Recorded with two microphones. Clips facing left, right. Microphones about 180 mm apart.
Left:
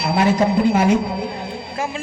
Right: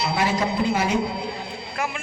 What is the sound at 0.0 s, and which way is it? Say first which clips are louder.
Speech: left 6 dB; 55° left (ahead or behind).